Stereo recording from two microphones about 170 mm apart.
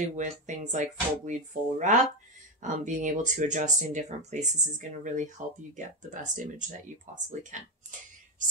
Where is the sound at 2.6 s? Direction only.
45° right (ahead or behind).